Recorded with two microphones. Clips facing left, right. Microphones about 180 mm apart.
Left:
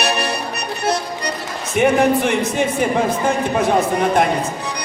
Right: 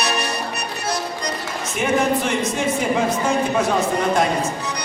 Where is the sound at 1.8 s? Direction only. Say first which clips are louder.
Left 5 dB; 60° left (ahead or behind).